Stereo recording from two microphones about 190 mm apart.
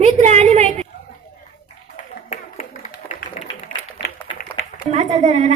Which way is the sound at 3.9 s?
50° left (ahead or behind).